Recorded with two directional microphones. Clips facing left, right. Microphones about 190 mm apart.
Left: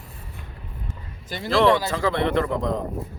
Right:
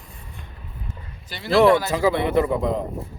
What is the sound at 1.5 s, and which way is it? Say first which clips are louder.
A man's voice: right 3 dB; 5° right (ahead or behind).